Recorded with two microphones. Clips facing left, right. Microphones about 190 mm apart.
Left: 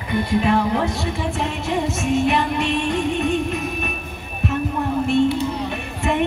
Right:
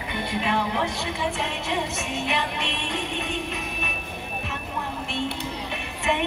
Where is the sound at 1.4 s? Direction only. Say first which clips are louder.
Left 5 dB; 45° left (ahead or behind).